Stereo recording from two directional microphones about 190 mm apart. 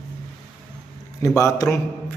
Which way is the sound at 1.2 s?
15° left (ahead or behind).